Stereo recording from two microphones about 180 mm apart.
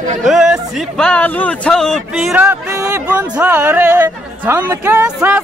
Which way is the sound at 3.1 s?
5° right (ahead or behind).